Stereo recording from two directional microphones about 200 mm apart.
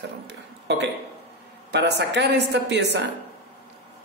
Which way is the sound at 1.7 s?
60° right (ahead or behind).